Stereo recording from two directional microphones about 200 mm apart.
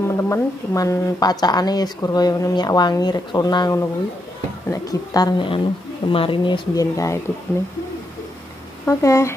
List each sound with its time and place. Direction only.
0.1 s speech: 15° left (ahead or behind)
8.8 s speech: 15° left (ahead or behind)